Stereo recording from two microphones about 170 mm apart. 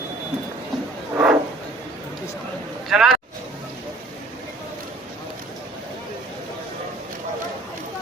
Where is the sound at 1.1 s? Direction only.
5° right (ahead or behind).